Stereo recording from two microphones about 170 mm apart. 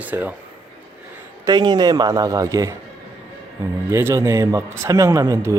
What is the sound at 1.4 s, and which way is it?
Speech, 25° right (ahead or behind).